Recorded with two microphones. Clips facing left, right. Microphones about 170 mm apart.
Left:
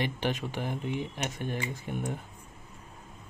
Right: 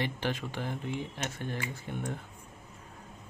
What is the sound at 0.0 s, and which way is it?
Speech, 15° left (ahead or behind).